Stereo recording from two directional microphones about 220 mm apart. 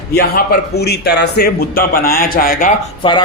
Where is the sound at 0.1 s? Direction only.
45° left (ahead or behind).